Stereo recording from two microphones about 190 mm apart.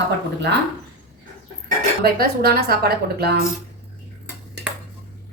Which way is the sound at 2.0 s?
55° right (ahead or behind).